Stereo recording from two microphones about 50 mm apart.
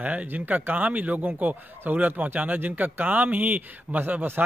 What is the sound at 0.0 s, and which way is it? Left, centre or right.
Speech, right.